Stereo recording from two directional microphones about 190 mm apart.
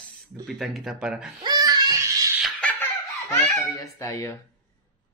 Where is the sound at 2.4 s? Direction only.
5° left (ahead or behind).